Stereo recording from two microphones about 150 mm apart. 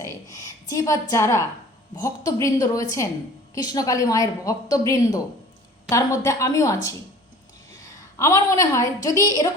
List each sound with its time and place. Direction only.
0.0 s a sound: 20° left (ahead or behind)
2.0 s speech: 25° left (ahead or behind)
8.2 s speech: 20° left (ahead or behind)